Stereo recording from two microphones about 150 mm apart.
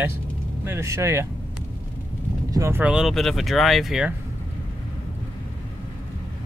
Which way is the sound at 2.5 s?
20° right (ahead or behind).